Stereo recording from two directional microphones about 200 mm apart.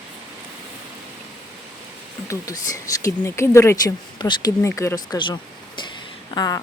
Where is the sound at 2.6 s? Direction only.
15° left (ahead or behind).